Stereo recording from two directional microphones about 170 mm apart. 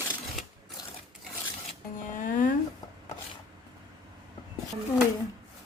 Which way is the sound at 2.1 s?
50° left (ahead or behind).